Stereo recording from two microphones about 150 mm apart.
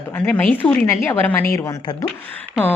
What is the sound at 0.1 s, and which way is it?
A woman's voice, 10° left (ahead or behind).